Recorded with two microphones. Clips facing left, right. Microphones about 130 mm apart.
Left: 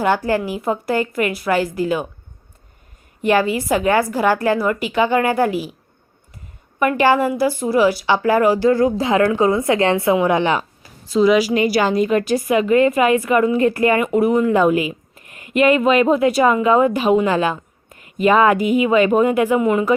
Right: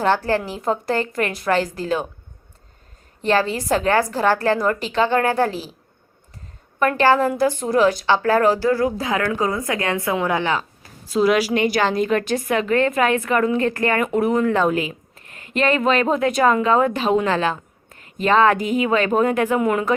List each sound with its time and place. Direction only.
0.0 s a woman's voice: 10° left (ahead or behind)
3.2 s a woman's voice: 15° left (ahead or behind)
6.7 s a woman's voice: 15° left (ahead or behind)
11.1 s a woman's voice: centre (ahead or behind)